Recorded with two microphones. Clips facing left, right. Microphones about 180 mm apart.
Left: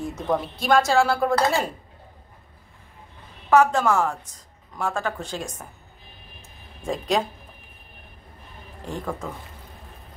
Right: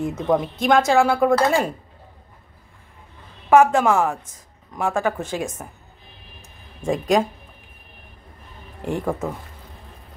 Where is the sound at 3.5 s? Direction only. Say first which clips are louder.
Right 3 dB; 10° right (ahead or behind).